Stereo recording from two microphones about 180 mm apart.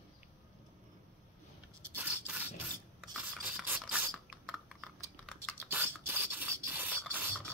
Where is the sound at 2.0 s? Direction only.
10° right (ahead or behind).